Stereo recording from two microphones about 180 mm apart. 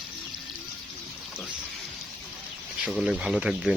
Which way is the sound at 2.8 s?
Centre (ahead or behind).